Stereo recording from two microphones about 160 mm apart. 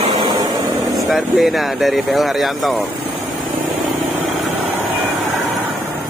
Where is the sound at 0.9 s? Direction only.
Centre (ahead or behind).